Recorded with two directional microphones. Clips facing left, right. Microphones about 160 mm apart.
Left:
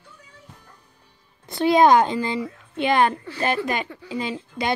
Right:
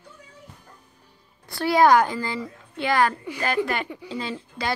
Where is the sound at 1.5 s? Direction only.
20° left (ahead or behind).